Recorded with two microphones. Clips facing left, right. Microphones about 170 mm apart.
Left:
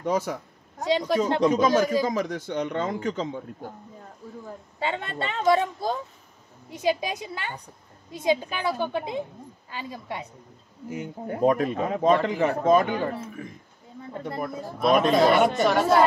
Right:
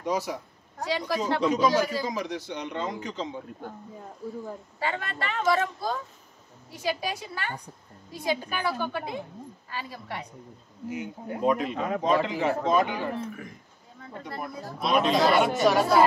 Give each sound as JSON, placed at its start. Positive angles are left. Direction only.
{"t": 0.0, "sound": "a man's voice", "side_deg": 50}
{"t": 0.7, "sound": "speech", "side_deg": 20}
{"t": 1.4, "sound": "a man's voice", "side_deg": 50}
{"t": 4.7, "sound": "speech", "side_deg": 20}
{"t": 10.9, "sound": "a man's voice", "side_deg": 45}
{"t": 14.4, "sound": "a man's voice", "side_deg": 50}
{"t": 15.5, "sound": "speech", "side_deg": 0}